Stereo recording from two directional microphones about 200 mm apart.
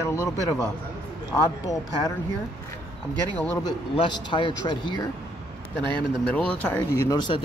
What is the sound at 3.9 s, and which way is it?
Speech, 25° left (ahead or behind).